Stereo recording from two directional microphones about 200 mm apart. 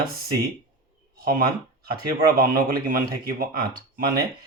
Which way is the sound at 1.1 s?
45° right (ahead or behind).